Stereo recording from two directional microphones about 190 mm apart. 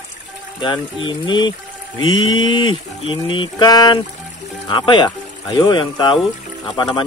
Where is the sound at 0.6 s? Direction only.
25° left (ahead or behind).